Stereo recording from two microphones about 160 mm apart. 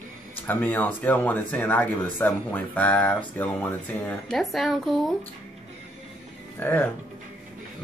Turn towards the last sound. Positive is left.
turn(degrees=15)  # may be behind; listen again after turning